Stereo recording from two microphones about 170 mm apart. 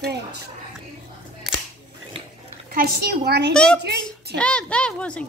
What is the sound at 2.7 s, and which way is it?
Speech, 75° right (ahead or behind).